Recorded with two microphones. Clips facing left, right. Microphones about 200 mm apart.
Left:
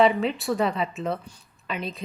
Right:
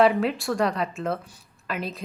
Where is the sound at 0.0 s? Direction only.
Centre (ahead or behind).